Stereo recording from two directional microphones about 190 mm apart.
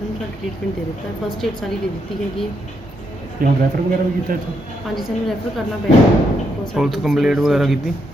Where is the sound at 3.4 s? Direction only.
50° right (ahead or behind).